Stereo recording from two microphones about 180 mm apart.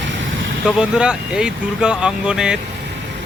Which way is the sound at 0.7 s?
5° right (ahead or behind).